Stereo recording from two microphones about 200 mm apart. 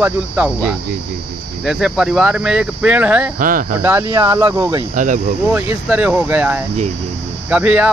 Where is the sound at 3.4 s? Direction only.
45° right (ahead or behind).